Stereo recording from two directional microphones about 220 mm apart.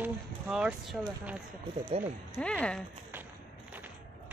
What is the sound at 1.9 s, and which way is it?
Speech, 30° right (ahead or behind).